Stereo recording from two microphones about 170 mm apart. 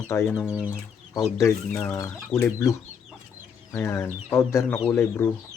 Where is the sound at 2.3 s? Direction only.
15° left (ahead or behind).